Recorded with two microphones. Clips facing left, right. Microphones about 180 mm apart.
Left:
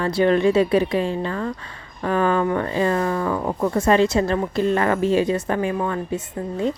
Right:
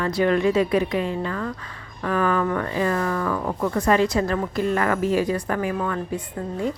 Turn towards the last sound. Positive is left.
turn(degrees=15)  # may be behind; listen again after turning